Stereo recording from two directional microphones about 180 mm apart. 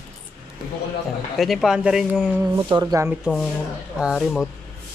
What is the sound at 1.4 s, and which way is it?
Speech, centre (ahead or behind).